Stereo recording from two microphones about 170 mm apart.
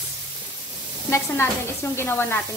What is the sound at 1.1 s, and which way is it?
Sizzle, 15° left (ahead or behind).